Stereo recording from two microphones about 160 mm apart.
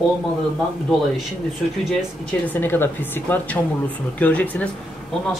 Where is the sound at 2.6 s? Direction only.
15° left (ahead or behind).